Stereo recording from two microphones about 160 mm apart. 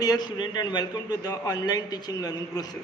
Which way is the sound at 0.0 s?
25° left (ahead or behind).